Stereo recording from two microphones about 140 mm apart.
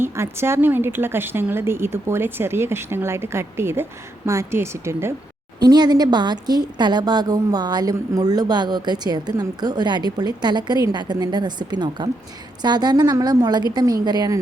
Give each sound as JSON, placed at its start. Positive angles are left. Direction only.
{"t": 0.0, "sound": "a woman's voice", "side_deg": -15}
{"t": 5.6, "sound": "a woman's voice", "side_deg": -30}